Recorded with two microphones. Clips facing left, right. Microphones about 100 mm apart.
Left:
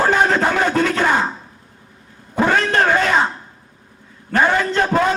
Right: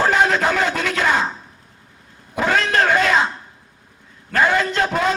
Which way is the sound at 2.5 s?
35° left (ahead or behind).